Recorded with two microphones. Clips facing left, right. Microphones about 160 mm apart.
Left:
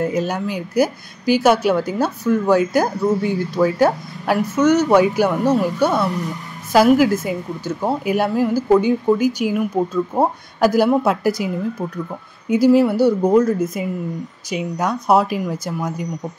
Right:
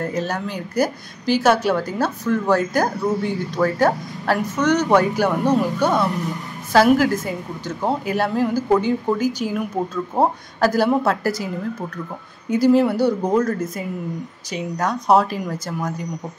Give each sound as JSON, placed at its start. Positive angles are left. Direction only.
{"t": 0.0, "sound": "speech", "side_deg": 10}
{"t": 12.4, "sound": "speech", "side_deg": 10}